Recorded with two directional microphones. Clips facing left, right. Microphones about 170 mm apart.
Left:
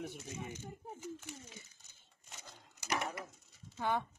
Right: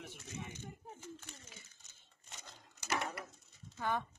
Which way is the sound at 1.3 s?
10° left (ahead or behind).